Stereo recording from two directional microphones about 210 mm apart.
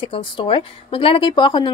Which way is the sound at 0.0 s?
25° left (ahead or behind).